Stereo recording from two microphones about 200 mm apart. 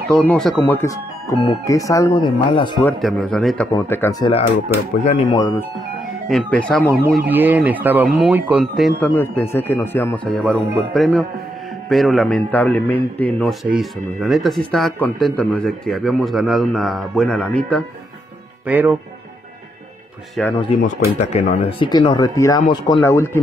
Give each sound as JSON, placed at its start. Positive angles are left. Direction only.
{"t": 0.1, "sound": "speech", "side_deg": 5}
{"t": 2.8, "sound": "a man's voice", "side_deg": 5}
{"t": 3.7, "sound": "speech", "side_deg": 15}
{"t": 5.0, "sound": "speech", "side_deg": 30}
{"t": 5.4, "sound": "speech", "side_deg": 10}
{"t": 6.2, "sound": "a man's voice", "side_deg": 0}
{"t": 7.2, "sound": "speech", "side_deg": -10}
{"t": 9.1, "sound": "a man's voice", "side_deg": 10}
{"t": 18.7, "sound": "speech", "side_deg": -10}
{"t": 20.5, "sound": "speech", "side_deg": 30}